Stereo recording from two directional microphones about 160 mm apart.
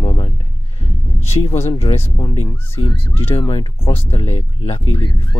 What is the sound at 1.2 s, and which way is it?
Speech, 40° left (ahead or behind).